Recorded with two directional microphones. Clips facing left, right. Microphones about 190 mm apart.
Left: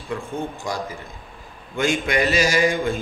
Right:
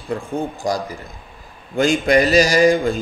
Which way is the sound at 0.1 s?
35° right (ahead or behind).